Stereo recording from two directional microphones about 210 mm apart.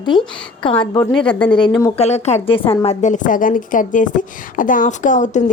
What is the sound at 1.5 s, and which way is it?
A woman's voice, 25° left (ahead or behind).